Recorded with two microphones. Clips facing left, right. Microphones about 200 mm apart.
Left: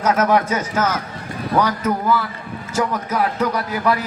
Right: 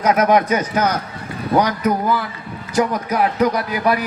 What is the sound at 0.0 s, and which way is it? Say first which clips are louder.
A man's voice: right 2 dB; 15° right (ahead or behind).